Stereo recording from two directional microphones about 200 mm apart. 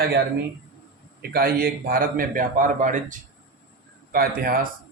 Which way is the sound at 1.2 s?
50° right (ahead or behind).